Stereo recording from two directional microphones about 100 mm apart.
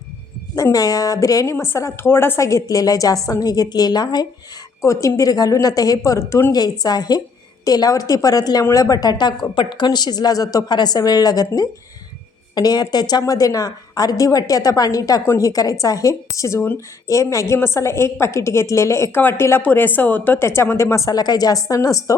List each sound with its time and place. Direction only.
0.5 s a woman's voice: 35° left (ahead or behind)
4.8 s a woman's voice: 30° left (ahead or behind)
6.5 s a woman's voice: 40° left (ahead or behind)